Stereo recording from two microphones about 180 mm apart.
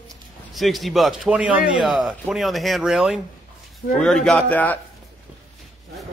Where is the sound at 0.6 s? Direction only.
Centre (ahead or behind).